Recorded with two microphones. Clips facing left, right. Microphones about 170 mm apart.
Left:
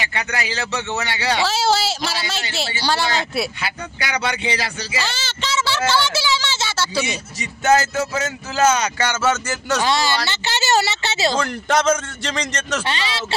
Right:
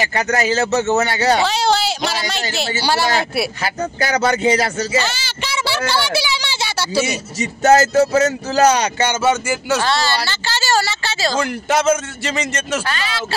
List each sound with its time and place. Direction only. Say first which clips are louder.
0.0 s speech: right 7 dB; 40° right (ahead or behind)
1.4 s speech: right 2 dB; 5° left (ahead or behind)
2.8 s a man's voice: right 2 dB; 10° right (ahead or behind)
3.6 s speech: right 7 dB; 40° right (ahead or behind)
5.0 s a sound: right 2 dB; 10° right (ahead or behind)
5.9 s speech: even; 15° right (ahead or behind)
7.3 s speech: right 4 dB; 40° right (ahead or behind)
9.0 s a man's voice: right 4 dB; 15° right (ahead or behind)
9.8 s speech: right 1 dB; 15° left (ahead or behind)
11.3 s a man's voice: right 1 dB; 5° right (ahead or behind)